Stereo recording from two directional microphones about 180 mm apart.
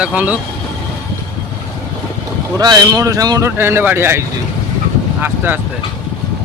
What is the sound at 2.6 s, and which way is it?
Speech, 25° right (ahead or behind).